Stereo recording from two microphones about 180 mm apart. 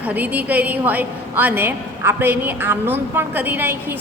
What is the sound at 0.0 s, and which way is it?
A woman's voice, 10° right (ahead or behind).